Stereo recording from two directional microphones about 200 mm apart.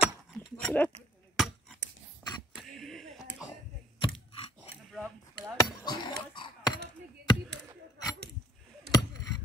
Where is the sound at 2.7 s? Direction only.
Centre (ahead or behind).